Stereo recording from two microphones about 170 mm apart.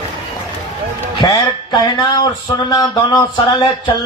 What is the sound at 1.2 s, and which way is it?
Speech, 25° left (ahead or behind).